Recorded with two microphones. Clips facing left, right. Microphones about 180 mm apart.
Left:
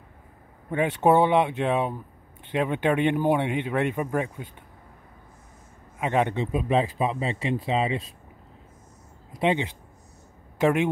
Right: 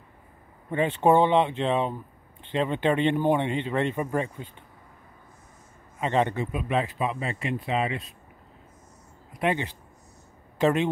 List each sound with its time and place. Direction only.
0.7 s a man's voice: 10° left (ahead or behind)
5.9 s speech: 10° left (ahead or behind)
6.3 s speech: 25° left (ahead or behind)
9.4 s speech: 20° left (ahead or behind)